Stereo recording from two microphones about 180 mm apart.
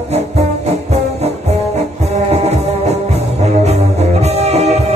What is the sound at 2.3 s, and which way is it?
Music, 35° right (ahead or behind).